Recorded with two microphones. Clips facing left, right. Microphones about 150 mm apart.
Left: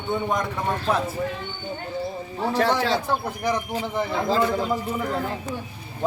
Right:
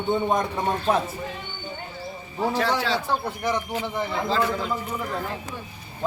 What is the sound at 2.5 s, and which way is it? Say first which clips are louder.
Speech: left 4 dB; 40° left (ahead or behind).